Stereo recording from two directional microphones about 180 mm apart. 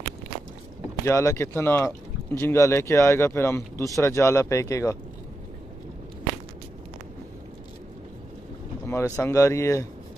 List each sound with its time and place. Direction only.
1.0 s speech: 15° left (ahead or behind)
8.8 s speech: 15° left (ahead or behind)